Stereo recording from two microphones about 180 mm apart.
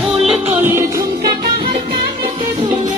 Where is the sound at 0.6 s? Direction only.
15° right (ahead or behind).